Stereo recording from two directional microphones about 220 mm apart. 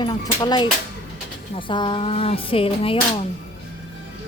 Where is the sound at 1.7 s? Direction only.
20° left (ahead or behind).